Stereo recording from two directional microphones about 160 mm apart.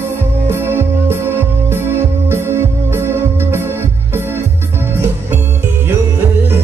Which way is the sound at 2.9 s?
15° right (ahead or behind).